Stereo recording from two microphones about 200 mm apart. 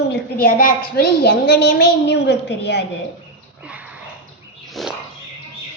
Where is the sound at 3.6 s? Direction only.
5° right (ahead or behind).